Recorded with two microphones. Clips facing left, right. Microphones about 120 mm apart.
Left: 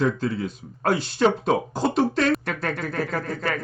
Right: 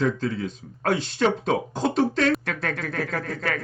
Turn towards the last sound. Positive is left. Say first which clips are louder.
# left 1 dB
turn(degrees=0)  # may be behind; listen again after turning